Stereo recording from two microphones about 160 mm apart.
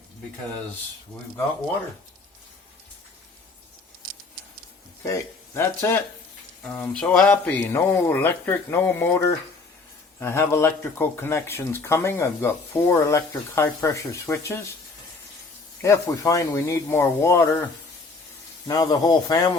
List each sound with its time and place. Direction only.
5.0 s speech: 20° left (ahead or behind)
15.8 s speech: 20° left (ahead or behind)
18.7 s speech: 25° left (ahead or behind)